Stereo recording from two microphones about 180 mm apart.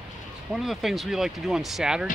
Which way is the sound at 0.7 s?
Centre (ahead or behind).